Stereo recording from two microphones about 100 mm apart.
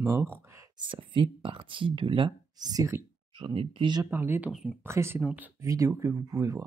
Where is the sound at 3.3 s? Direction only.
65° right (ahead or behind).